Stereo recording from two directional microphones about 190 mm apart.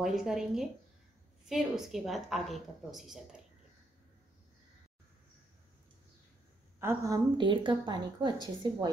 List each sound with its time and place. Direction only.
0.0 s a woman's voice: centre (ahead or behind)
6.8 s a woman's voice: 15° right (ahead or behind)
7.3 s a woman's voice: 25° right (ahead or behind)